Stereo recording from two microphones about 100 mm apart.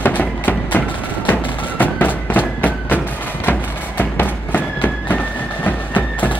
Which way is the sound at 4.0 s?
20° left (ahead or behind).